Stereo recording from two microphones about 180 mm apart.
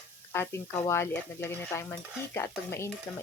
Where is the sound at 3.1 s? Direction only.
5° left (ahead or behind).